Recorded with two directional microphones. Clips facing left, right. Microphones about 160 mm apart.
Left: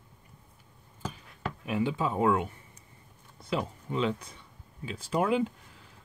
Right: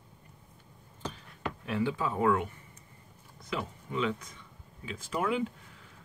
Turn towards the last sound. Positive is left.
turn(degrees=30)  # may be behind; listen again after turning